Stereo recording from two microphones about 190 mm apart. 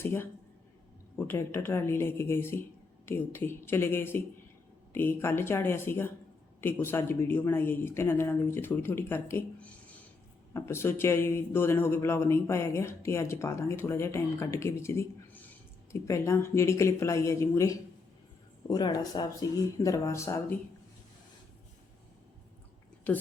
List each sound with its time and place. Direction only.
0.0 s a man's voice: 10° left (ahead or behind)
1.3 s a man's voice: 10° left (ahead or behind)